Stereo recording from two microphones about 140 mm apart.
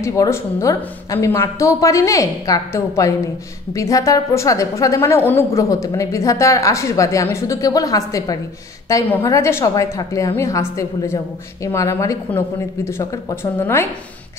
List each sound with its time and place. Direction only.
0.0 s a woman's voice: 20° left (ahead or behind)